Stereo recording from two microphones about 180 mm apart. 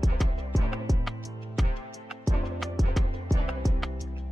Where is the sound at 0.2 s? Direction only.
Centre (ahead or behind).